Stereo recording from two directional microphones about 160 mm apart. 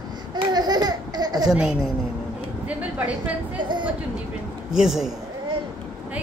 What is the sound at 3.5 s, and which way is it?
Speech, 30° right (ahead or behind).